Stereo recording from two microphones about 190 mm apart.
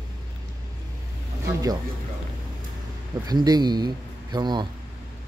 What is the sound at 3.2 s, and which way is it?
Speech, 20° right (ahead or behind).